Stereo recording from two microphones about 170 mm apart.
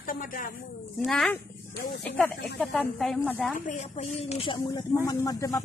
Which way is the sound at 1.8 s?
65° left (ahead or behind).